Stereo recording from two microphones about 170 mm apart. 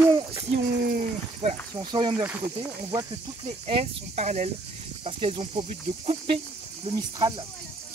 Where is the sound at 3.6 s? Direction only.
35° right (ahead or behind).